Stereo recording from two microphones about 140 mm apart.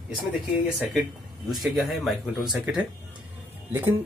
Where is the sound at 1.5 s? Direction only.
Centre (ahead or behind).